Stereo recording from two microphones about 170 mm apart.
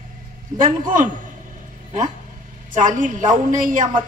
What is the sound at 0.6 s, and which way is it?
Speech, 50° right (ahead or behind).